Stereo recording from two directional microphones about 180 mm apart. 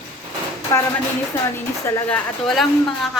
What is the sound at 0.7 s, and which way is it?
Speech, 15° left (ahead or behind).